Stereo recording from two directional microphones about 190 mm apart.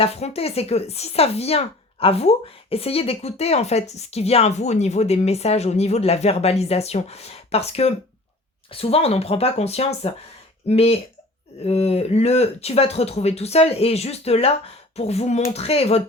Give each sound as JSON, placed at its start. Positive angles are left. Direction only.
{"t": 0.0, "sound": "speech", "side_deg": 30}